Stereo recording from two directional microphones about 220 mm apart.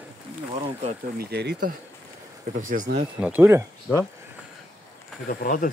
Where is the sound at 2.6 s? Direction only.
35° right (ahead or behind).